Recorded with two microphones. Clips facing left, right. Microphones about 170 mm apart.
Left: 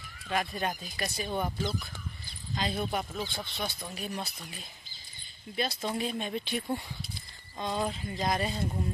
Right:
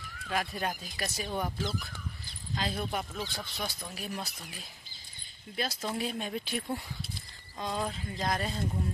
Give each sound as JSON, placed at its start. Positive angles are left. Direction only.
{"t": 0.3, "sound": "speech", "side_deg": 0}